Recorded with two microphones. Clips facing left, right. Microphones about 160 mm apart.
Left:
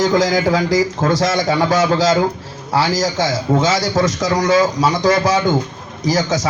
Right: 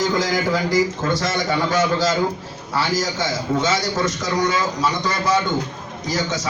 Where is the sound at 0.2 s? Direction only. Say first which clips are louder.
Left 5 dB; 90° left.